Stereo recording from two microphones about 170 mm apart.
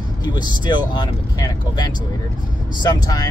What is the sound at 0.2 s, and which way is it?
Speech, 25° left (ahead or behind).